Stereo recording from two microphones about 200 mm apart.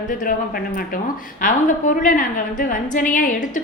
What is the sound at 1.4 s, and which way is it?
A woman's voice, 40° left (ahead or behind).